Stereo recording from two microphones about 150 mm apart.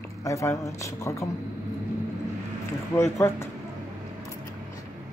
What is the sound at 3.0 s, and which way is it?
Speech, 20° left (ahead or behind).